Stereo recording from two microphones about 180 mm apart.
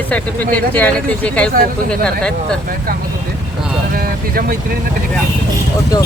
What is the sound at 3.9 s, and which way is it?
Speech, 50° right (ahead or behind).